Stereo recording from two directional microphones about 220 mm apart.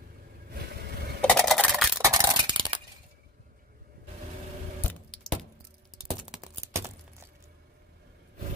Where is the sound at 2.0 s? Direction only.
15° right (ahead or behind).